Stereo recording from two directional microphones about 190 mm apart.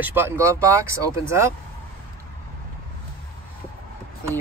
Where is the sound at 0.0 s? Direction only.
10° right (ahead or behind).